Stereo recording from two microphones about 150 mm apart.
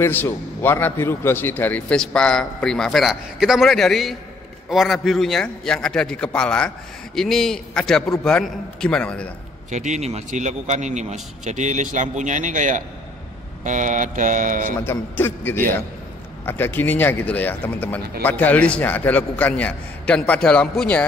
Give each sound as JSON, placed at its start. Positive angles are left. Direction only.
{"t": 0.0, "sound": "a man's voice", "side_deg": 15}
{"t": 9.7, "sound": "a man's voice", "side_deg": -55}
{"t": 14.9, "sound": "a man's voice", "side_deg": 15}